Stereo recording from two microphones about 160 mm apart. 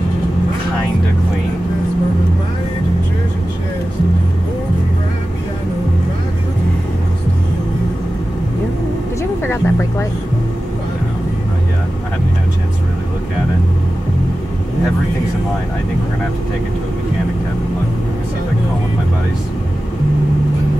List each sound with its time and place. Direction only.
9.4 s music: 15° left (ahead or behind)